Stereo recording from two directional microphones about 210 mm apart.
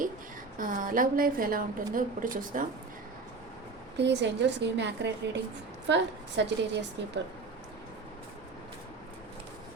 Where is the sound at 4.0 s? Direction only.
55° right (ahead or behind).